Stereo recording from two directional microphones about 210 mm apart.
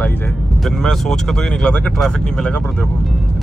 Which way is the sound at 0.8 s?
Centre (ahead or behind).